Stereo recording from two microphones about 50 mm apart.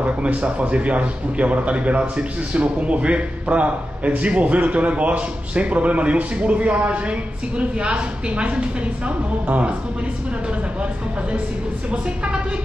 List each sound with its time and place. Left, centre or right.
0.0 s a man's voice: right